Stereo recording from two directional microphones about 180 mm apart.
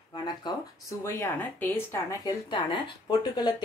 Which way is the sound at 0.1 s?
25° left (ahead or behind).